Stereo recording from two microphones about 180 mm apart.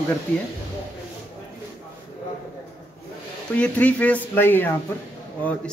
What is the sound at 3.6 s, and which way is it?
Speech, 10° left (ahead or behind).